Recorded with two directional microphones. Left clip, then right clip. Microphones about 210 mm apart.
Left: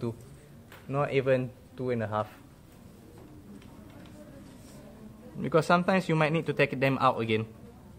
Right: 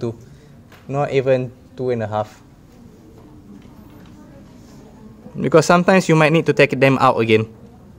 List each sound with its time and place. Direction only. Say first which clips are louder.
0.8 s speech: right 9 dB; 20° right (ahead or behind)
5.4 s speech: right 12 dB; 40° right (ahead or behind)